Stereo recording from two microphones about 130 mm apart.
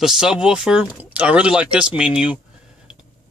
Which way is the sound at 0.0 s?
5° right (ahead or behind).